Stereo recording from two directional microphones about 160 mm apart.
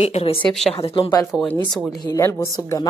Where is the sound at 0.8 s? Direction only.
30° left (ahead or behind).